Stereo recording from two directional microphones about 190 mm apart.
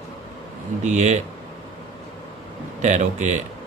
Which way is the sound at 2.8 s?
40° right (ahead or behind).